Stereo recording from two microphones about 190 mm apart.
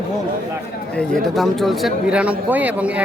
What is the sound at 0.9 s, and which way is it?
Speech, centre (ahead or behind).